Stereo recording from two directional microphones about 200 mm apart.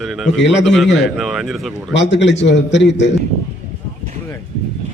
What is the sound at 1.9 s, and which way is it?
A man's voice, 65° left (ahead or behind).